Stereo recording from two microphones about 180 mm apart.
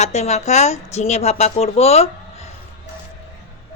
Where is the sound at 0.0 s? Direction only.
40° left (ahead or behind).